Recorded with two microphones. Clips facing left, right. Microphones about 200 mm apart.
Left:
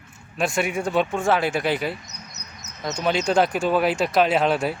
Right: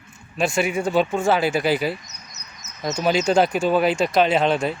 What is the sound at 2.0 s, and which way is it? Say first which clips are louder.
Bird: left 3 dB; 65° left (ahead or behind).